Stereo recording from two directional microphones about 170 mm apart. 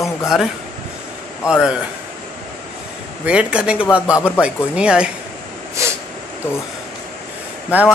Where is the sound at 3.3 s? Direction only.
5° right (ahead or behind).